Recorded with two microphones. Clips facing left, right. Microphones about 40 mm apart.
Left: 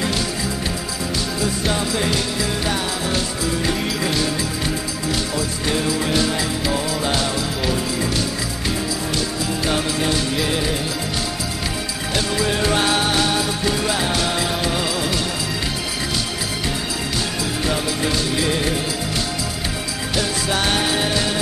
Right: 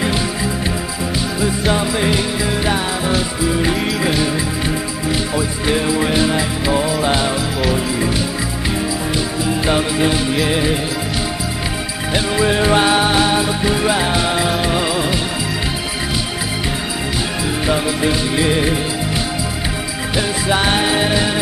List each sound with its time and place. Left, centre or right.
1.4 s music: centre
5.3 s music: centre
9.7 s music: centre
12.1 s music: right
17.6 s music: centre
20.2 s music: centre